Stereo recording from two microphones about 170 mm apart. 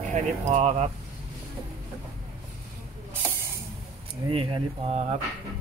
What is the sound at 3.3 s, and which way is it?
Hiss, 15° right (ahead or behind).